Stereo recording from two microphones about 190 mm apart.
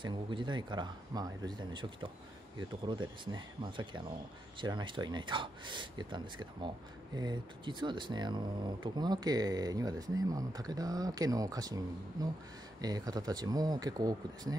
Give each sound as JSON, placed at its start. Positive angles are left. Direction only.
{"t": 0.0, "sound": "speech", "side_deg": -25}